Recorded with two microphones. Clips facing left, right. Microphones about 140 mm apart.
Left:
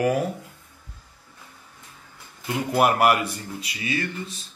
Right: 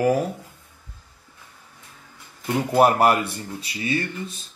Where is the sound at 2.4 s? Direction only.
30° right (ahead or behind).